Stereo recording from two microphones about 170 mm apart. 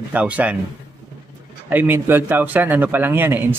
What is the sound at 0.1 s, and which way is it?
Speech, 10° right (ahead or behind).